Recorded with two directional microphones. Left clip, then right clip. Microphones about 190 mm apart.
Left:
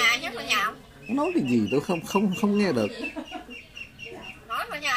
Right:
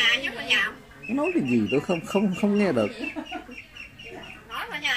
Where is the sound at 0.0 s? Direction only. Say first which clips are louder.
Right 1 dB; 25° left (ahead or behind).